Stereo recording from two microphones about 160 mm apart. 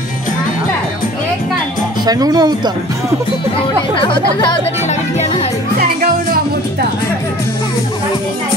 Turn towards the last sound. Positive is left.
turn(degrees=-65)  # may be behind; listen again after turning